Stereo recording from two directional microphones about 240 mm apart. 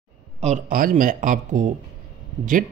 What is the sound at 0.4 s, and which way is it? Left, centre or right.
Speech, right.